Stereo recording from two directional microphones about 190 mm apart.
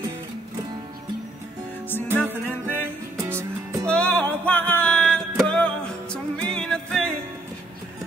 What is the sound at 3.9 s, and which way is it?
Music, 5° left (ahead or behind).